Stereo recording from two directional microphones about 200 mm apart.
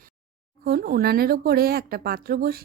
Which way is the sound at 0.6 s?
50° right (ahead or behind).